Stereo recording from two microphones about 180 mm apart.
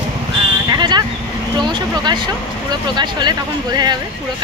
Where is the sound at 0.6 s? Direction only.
25° right (ahead or behind).